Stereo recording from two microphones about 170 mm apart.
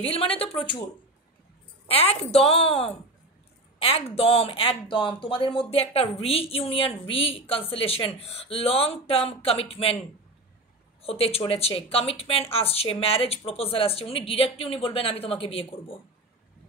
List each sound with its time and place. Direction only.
0.0 s speech: 35° left (ahead or behind)
1.9 s speech: 35° left (ahead or behind)
3.8 s speech: 35° left (ahead or behind)
11.0 s speech: 35° left (ahead or behind)